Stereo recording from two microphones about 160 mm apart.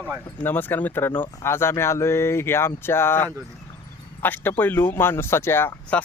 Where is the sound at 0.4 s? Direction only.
10° left (ahead or behind).